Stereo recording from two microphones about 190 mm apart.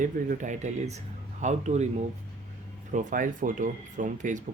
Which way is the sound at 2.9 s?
45° right (ahead or behind).